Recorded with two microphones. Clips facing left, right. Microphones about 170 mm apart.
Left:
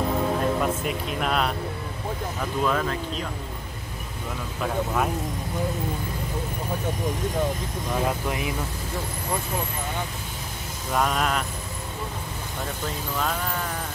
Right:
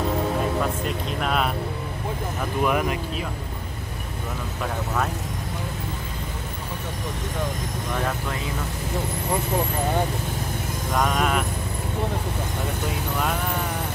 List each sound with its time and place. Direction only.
0.8 s speech: centre (ahead or behind)
2.6 s speech: 15° right (ahead or behind)
7.9 s speech: 15° left (ahead or behind)
11.0 s speech: centre (ahead or behind)